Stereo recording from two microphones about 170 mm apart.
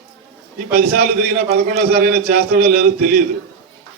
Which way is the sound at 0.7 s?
60° right (ahead or behind).